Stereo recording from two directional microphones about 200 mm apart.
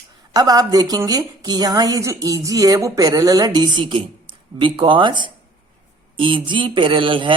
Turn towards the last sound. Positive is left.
turn(degrees=-25)  # may be behind; listen again after turning